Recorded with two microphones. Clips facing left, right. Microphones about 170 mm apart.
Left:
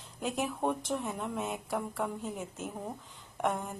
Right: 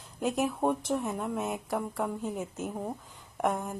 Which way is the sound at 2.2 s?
45° right (ahead or behind).